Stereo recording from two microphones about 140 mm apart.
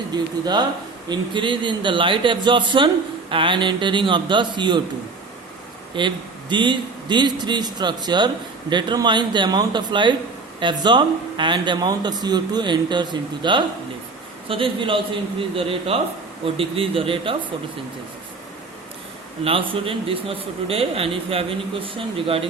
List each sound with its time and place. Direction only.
0.1 s speech: 30° right (ahead or behind)
5.9 s speech: 35° right (ahead or behind)
19.5 s speech: 40° right (ahead or behind)